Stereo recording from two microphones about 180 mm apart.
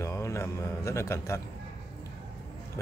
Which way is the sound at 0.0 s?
15° left (ahead or behind).